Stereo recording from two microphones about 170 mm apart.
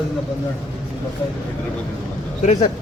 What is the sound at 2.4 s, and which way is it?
Speech, 45° left (ahead or behind).